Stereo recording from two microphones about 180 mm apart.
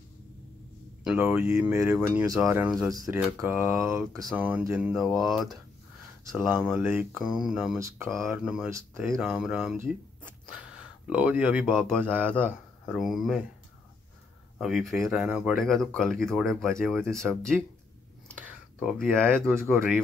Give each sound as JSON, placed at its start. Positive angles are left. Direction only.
{"t": 1.0, "sound": "speech", "side_deg": -10}
{"t": 2.9, "sound": "speech", "side_deg": -20}
{"t": 7.8, "sound": "speech", "side_deg": -15}
{"t": 8.2, "sound": "speech", "side_deg": -5}
{"t": 8.6, "sound": "speech", "side_deg": -15}
{"t": 9.2, "sound": "speech", "side_deg": -5}
{"t": 11.1, "sound": "speech", "side_deg": -5}
{"t": 14.6, "sound": "speech", "side_deg": 0}
{"t": 19.0, "sound": "speech", "side_deg": 5}